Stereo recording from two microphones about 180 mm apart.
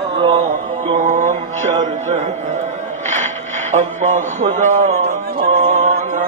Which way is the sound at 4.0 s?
45° right (ahead or behind).